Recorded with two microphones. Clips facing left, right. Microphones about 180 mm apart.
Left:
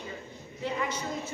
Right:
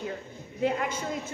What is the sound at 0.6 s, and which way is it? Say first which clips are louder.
Speech: right 4 dB; 55° right (ahead or behind).